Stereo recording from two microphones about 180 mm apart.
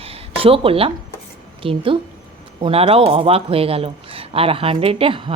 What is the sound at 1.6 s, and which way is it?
A woman's voice, 30° right (ahead or behind).